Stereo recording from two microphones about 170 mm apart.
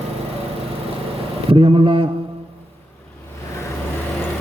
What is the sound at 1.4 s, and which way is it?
Speech, 35° right (ahead or behind).